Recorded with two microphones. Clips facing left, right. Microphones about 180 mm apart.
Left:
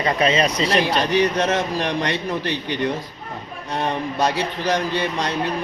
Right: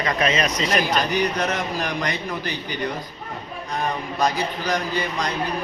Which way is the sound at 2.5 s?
80° left.